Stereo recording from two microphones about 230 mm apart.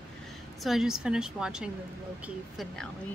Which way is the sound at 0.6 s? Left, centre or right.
Centre.